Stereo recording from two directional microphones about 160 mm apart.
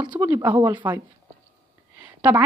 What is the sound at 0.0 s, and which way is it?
Speech, 20° right (ahead or behind).